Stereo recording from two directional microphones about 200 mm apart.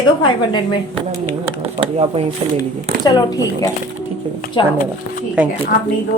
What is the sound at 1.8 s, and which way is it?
Speech, 30° right (ahead or behind).